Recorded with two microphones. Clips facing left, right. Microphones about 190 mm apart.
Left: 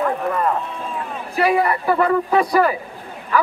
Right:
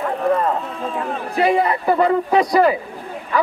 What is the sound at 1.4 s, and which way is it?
A man's voice, 25° right (ahead or behind).